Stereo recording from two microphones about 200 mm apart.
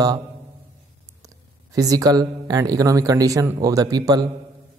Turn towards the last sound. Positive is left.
turn(degrees=-20)  # may be behind; listen again after turning